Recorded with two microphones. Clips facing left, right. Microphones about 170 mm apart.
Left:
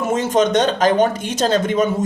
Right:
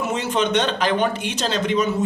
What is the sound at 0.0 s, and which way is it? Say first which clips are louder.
Speech: left 5 dB; 45° left (ahead or behind).